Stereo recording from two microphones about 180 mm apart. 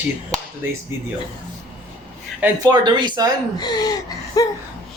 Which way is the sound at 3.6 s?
25° left (ahead or behind).